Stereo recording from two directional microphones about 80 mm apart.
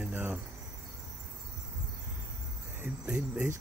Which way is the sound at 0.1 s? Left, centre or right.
Right.